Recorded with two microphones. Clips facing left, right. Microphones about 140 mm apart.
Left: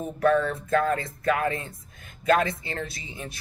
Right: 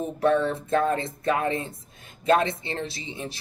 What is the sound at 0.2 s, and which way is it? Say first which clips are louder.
Speech: even; 25° right (ahead or behind).